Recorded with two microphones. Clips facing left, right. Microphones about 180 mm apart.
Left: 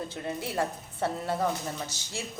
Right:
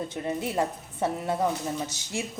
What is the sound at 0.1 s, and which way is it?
A woman's voice, 20° right (ahead or behind).